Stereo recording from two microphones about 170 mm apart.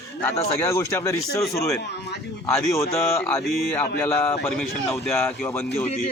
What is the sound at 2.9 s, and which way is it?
A man's voice, 10° left (ahead or behind).